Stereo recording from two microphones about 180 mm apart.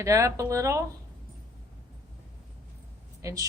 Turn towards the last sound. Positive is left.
turn(degrees=-15)  # may be behind; listen again after turning